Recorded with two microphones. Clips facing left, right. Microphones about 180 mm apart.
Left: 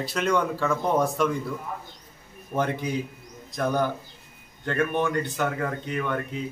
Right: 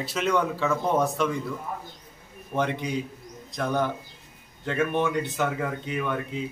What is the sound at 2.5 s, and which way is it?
Speech, centre (ahead or behind).